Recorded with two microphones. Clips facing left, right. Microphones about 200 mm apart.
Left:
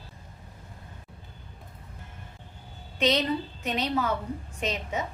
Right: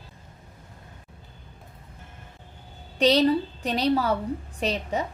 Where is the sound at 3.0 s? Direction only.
35° right (ahead or behind).